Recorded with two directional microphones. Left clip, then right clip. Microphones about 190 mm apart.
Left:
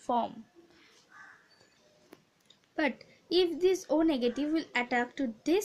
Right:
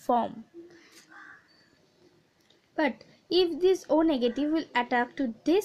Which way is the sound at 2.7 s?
20° right (ahead or behind).